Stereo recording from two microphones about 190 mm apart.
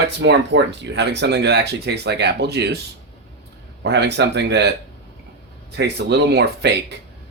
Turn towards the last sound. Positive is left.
turn(degrees=-60)  # may be behind; listen again after turning